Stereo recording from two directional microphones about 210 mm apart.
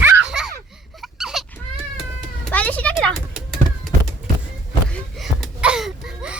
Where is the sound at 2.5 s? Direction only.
5° left (ahead or behind).